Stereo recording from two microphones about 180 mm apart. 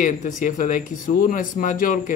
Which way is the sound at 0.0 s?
45° left (ahead or behind).